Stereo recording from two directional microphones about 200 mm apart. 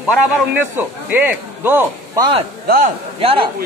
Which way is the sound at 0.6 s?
10° right (ahead or behind).